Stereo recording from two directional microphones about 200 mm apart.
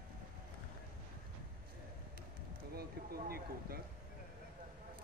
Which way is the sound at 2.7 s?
50° right (ahead or behind).